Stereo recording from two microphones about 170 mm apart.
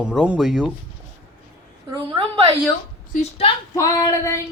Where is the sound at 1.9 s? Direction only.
30° right (ahead or behind).